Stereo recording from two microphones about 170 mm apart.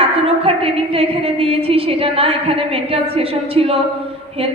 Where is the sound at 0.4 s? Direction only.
35° right (ahead or behind).